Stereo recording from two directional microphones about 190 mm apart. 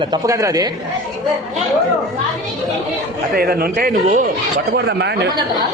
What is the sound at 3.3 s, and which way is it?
Speech, 50° right (ahead or behind).